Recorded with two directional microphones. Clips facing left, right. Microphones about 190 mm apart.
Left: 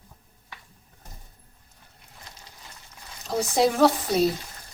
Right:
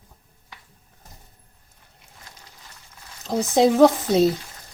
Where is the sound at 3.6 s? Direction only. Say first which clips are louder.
Right 5 dB; 20° right (ahead or behind).